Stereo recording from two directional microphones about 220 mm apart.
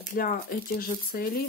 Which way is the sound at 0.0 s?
40° left (ahead or behind).